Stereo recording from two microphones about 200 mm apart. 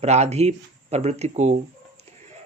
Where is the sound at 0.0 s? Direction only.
35° right (ahead or behind).